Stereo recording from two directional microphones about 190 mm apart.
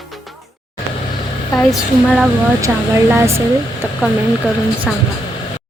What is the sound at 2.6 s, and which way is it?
Speech, 15° right (ahead or behind).